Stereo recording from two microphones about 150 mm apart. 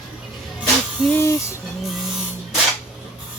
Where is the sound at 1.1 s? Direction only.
15° left (ahead or behind).